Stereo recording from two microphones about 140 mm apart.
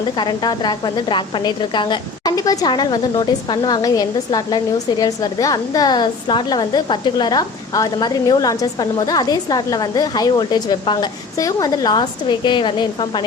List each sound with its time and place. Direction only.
0.2 s a woman's voice: 30° left (ahead or behind)